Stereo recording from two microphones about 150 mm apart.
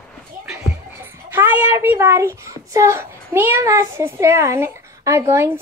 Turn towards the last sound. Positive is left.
turn(degrees=-15)  # may be behind; listen again after turning